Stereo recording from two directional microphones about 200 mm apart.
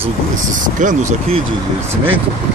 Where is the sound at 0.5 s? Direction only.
40° right (ahead or behind).